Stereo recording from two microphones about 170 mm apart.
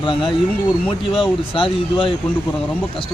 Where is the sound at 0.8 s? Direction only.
30° left (ahead or behind).